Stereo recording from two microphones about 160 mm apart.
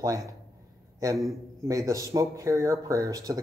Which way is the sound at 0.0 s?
20° right (ahead or behind).